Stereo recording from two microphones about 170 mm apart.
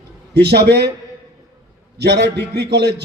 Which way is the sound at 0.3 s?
75° right (ahead or behind).